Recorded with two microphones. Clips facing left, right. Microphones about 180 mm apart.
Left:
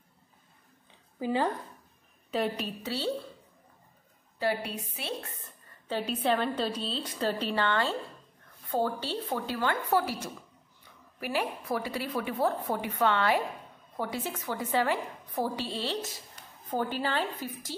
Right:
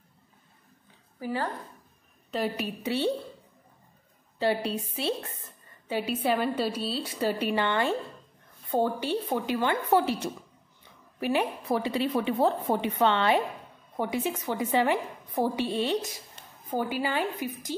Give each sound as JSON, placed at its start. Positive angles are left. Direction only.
{"t": 1.2, "sound": "a woman's voice", "side_deg": 20}
{"t": 2.3, "sound": "a woman's voice", "side_deg": -5}
{"t": 4.4, "sound": "a woman's voice", "side_deg": -25}
{"t": 5.9, "sound": "a woman's voice", "side_deg": -10}